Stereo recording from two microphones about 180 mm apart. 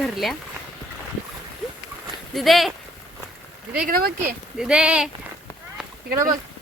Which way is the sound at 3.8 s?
55° right (ahead or behind).